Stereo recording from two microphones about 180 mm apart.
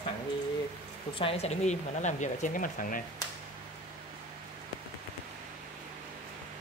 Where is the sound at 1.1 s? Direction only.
30° left (ahead or behind); by 3.0 s 50° left (ahead or behind).